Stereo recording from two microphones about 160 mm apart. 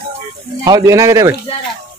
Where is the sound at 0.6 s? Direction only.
20° right (ahead or behind).